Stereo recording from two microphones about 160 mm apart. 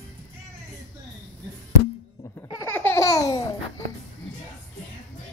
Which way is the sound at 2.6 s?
15° left (ahead or behind).